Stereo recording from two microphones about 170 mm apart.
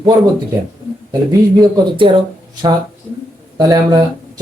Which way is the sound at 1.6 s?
25° right (ahead or behind).